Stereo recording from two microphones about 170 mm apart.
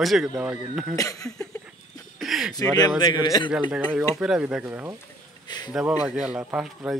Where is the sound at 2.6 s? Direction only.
25° left (ahead or behind).